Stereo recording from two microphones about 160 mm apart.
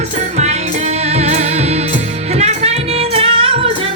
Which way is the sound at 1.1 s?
45° right (ahead or behind).